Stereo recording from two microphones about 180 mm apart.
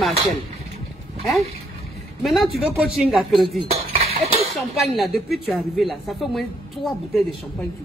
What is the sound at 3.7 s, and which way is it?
Chink, 35° right (ahead or behind).